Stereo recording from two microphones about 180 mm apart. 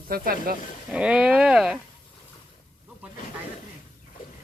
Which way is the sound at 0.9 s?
5° right (ahead or behind).